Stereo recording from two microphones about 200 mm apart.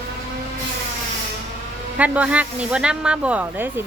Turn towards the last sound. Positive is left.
turn(degrees=-10)  # may be behind; listen again after turning